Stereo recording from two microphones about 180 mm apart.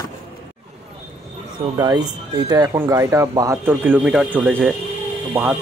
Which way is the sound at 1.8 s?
20° right (ahead or behind).